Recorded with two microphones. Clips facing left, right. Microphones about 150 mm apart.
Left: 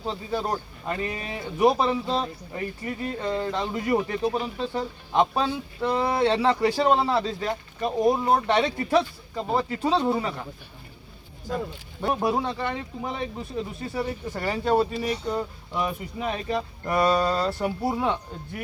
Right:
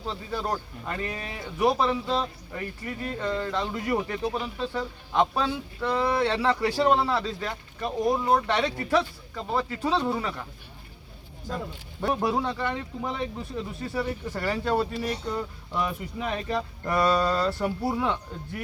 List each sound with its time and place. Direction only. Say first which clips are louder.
0.0 s speech: left 3 dB; 20° left (ahead or behind)
12.0 s speech: left 1 dB; 20° left (ahead or behind)
13.8 s speech: right 2 dB; 20° left (ahead or behind)